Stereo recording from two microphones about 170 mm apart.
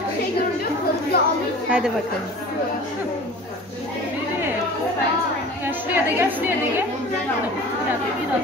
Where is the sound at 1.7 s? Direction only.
5° right (ahead or behind).